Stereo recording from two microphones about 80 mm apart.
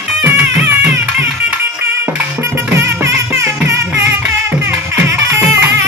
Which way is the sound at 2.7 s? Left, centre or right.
Right.